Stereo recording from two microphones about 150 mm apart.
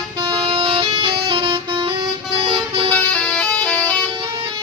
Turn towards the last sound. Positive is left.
turn(degrees=10)  # may be behind; listen again after turning